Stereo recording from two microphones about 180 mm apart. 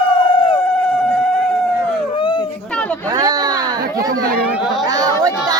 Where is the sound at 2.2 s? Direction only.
25° left (ahead or behind).